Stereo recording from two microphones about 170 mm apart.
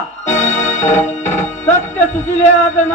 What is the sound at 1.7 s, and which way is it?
Speech, 45° left (ahead or behind).